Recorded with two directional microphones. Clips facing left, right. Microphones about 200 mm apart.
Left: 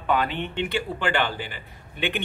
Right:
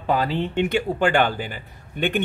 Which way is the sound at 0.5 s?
45° right (ahead or behind).